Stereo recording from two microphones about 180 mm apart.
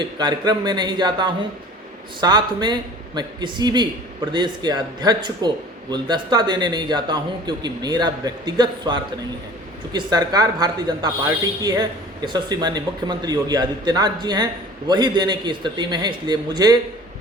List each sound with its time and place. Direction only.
0.0 s speech: 25° right (ahead or behind)